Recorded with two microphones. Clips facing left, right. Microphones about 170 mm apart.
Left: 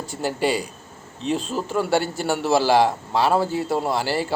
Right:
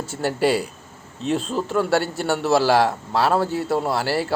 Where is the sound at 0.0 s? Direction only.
Centre (ahead or behind).